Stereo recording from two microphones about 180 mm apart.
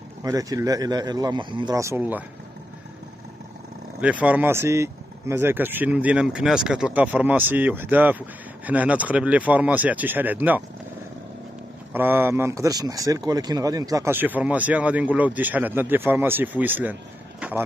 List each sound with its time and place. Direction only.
0.2 s a man's voice: 20° right (ahead or behind)
4.0 s speech: 10° right (ahead or behind)
11.9 s speech: 10° right (ahead or behind)